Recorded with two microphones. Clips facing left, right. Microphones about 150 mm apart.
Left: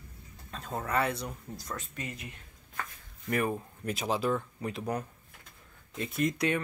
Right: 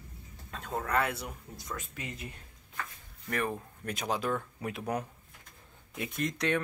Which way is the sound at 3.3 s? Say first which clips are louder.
Left 3 dB; 10° left (ahead or behind).